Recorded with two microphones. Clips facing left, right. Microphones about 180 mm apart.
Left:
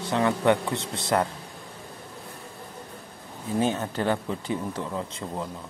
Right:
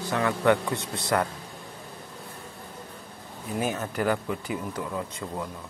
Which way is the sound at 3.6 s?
25° left (ahead or behind).